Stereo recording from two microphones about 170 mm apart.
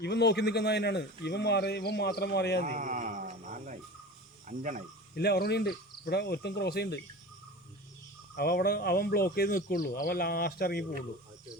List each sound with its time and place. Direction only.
0.0 s a man's voice: 80° left
2.6 s a sound: 50° right (ahead or behind)
4.4 s speech: 50° right (ahead or behind)
5.1 s a man's voice: 70° left (ahead or behind)
8.4 s speech: 70° left (ahead or behind)